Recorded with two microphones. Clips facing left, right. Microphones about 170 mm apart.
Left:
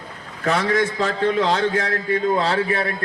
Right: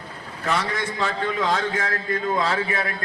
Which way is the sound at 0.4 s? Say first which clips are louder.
Left 6 dB; 45° left (ahead or behind).